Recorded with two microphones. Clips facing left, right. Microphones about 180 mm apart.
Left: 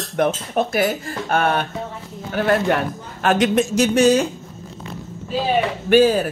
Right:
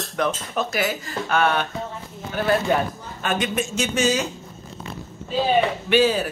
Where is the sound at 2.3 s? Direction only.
60° left (ahead or behind).